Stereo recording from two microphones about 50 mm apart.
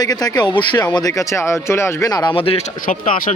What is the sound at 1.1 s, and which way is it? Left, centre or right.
Speech, left.